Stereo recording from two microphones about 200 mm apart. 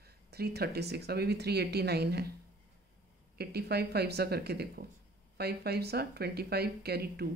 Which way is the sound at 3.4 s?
55° right (ahead or behind).